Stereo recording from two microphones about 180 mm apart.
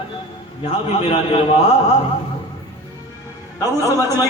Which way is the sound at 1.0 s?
30° left (ahead or behind).